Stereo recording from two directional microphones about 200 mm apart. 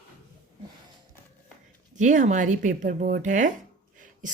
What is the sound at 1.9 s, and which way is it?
Speech, 40° right (ahead or behind).